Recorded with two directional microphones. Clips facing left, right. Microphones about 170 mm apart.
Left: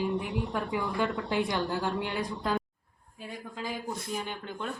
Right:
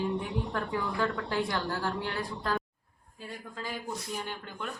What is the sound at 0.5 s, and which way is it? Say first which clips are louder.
A woman's voice: left 2 dB; 15° left (ahead or behind).